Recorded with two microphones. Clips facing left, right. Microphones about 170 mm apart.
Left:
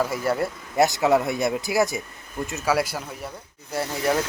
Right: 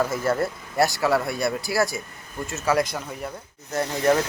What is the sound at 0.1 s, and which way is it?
Speech, 10° left (ahead or behind).